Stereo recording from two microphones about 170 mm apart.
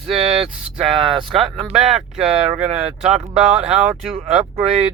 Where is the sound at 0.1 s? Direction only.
40° right (ahead or behind).